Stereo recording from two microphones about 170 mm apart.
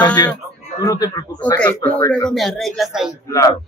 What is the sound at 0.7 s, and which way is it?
Speech, 20° left (ahead or behind).